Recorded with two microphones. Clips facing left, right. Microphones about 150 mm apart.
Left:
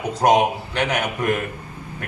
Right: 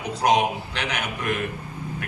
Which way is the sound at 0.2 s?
50° left (ahead or behind).